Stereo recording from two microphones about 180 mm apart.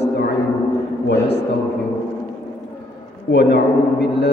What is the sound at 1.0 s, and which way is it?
Mantra, 70° left (ahead or behind).